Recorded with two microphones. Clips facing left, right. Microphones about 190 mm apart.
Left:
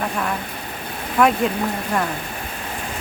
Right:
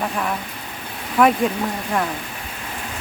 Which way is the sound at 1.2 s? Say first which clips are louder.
Right 1 dB; centre (ahead or behind).